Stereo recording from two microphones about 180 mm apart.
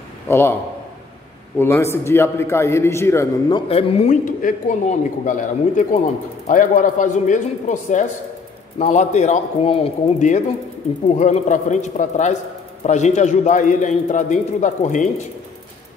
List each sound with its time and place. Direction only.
0.3 s a man's voice: 15° left (ahead or behind)
1.6 s a man's voice: 15° left (ahead or behind)
3.5 s a man's voice: 30° left (ahead or behind)
4.2 s a man's voice: 45° left (ahead or behind)